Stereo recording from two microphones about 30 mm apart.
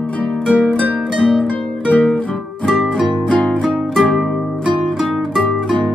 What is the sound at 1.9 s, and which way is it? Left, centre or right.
Guitar, left.